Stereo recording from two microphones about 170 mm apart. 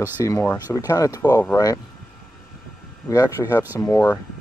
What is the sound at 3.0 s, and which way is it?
Speech, 20° left (ahead or behind).